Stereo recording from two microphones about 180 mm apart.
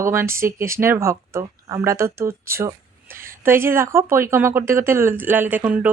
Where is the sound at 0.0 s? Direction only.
15° right (ahead or behind).